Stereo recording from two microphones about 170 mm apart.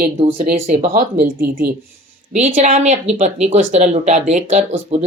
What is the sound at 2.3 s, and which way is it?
Speech, 40° right (ahead or behind).